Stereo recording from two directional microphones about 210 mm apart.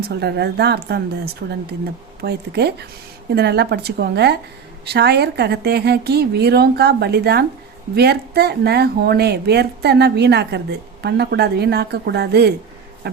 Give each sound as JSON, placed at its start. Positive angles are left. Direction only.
{"t": 0.1, "sound": "speech", "side_deg": -50}